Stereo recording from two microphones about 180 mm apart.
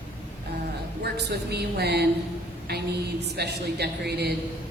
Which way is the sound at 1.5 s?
65° right (ahead or behind).